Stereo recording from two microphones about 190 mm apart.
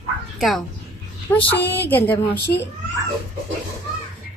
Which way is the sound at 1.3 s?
10° left (ahead or behind).